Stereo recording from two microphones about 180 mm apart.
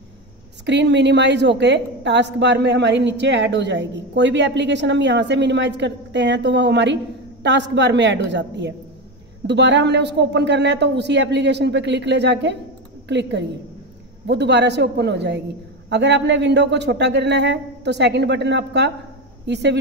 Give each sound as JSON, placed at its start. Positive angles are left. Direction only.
{"t": 0.7, "sound": "a woman's voice", "side_deg": -75}